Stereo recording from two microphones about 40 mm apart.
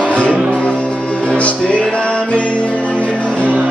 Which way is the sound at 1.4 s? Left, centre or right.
Left.